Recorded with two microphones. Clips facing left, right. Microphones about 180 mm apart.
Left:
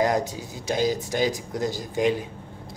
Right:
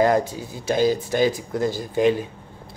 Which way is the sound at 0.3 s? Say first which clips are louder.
Right 4 dB; 15° left (ahead or behind).